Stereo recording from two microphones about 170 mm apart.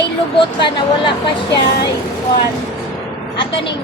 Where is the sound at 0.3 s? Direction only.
30° left (ahead or behind).